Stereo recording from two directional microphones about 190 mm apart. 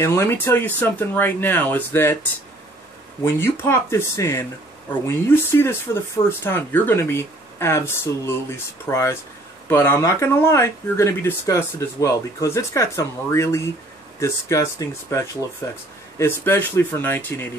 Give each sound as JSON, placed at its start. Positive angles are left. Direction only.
{"t": 0.0, "sound": "speech", "side_deg": 15}
{"t": 3.3, "sound": "speech", "side_deg": 10}